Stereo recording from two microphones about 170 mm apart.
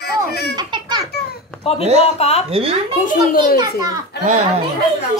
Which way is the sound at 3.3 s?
25° right (ahead or behind).